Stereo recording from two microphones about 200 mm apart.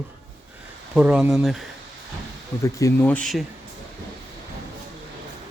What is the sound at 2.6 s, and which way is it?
Speech, 10° left (ahead or behind).